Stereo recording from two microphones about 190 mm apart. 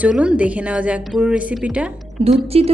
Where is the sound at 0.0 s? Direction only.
5° right (ahead or behind).